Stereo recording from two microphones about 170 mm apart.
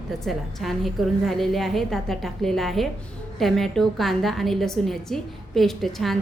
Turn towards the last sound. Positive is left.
turn(degrees=0)  # may be behind; listen again after turning